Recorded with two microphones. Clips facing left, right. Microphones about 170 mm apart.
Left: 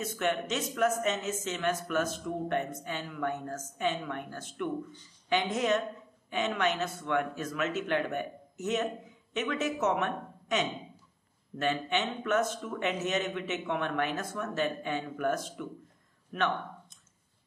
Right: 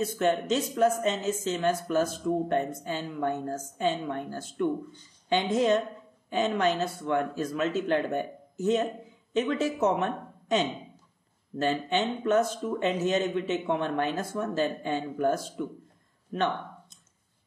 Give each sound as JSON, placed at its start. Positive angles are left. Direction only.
{"t": 0.0, "sound": "a woman's voice", "side_deg": -35}